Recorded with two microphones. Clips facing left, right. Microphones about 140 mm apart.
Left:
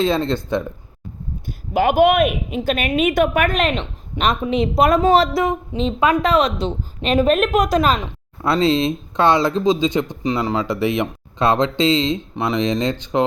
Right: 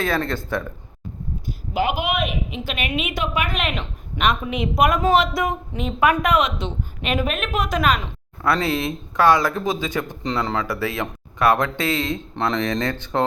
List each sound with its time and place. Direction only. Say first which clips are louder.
0.0 s speech: left 5 dB; 20° left (ahead or behind)
1.5 s a woman's voice: left 5 dB; 50° left (ahead or behind); by 13.2 s 15° left (ahead or behind)